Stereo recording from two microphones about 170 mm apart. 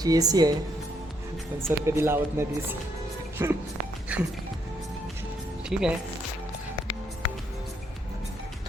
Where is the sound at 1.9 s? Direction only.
15° right (ahead or behind).